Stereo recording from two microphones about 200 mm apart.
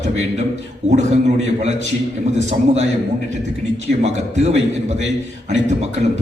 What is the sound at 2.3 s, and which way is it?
Speech, 35° right (ahead or behind).